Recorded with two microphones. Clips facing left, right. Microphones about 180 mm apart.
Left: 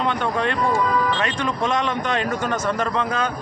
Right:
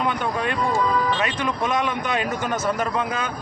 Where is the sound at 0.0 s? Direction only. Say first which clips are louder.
Left 2 dB; 10° right (ahead or behind).